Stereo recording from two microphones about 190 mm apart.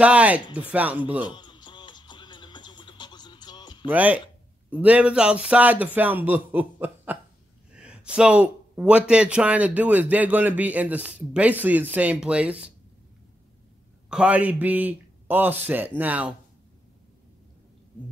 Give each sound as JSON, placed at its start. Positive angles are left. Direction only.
{"t": 0.0, "sound": "a man's voice", "side_deg": -5}
{"t": 1.2, "sound": "music", "side_deg": 25}
{"t": 3.8, "sound": "a man's voice", "side_deg": -10}
{"t": 14.0, "sound": "a man's voice", "side_deg": -5}